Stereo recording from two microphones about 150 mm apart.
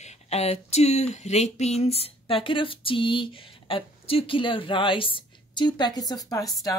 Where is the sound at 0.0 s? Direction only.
45° left (ahead or behind).